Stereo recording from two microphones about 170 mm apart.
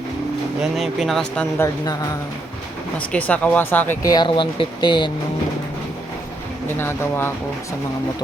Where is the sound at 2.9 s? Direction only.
10° left (ahead or behind).